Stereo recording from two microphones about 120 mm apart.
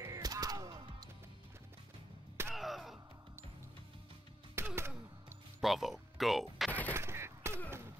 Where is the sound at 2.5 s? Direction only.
Centre (ahead or behind).